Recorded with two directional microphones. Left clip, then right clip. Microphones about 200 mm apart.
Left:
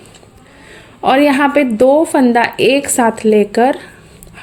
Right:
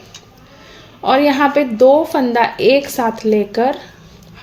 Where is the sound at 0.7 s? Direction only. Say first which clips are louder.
Left 2 dB; 35° left (ahead or behind).